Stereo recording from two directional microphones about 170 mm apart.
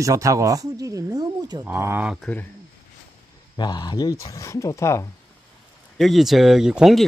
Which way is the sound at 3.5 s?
25° left (ahead or behind).